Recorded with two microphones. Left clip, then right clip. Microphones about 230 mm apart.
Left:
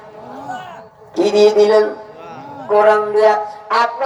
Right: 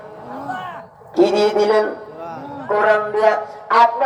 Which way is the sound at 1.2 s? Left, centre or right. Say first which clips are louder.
Left 4 dB; centre.